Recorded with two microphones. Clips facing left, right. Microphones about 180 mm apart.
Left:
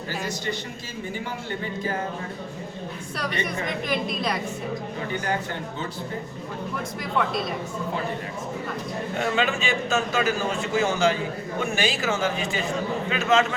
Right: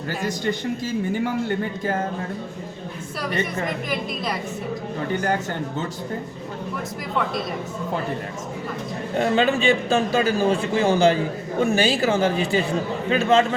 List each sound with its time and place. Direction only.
3.8 s a woman's voice: centre (ahead or behind)
9.1 s a man's voice: 35° right (ahead or behind)